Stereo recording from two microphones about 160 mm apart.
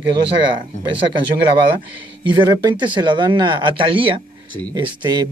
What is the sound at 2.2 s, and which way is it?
Speech, 30° right (ahead or behind).